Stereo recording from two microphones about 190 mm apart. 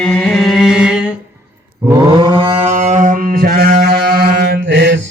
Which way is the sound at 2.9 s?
40° right (ahead or behind).